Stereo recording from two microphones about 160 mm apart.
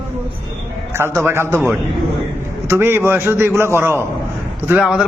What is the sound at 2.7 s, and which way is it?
A man's voice, 15° right (ahead or behind).